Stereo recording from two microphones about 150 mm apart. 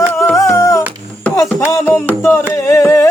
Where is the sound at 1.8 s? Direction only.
10° left (ahead or behind).